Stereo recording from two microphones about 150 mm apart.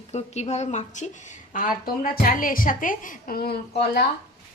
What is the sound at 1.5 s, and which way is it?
A woman's voice, 70° left (ahead or behind).